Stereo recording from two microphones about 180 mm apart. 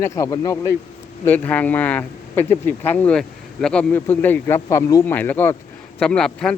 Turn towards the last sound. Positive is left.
turn(degrees=5)  # may be behind; listen again after turning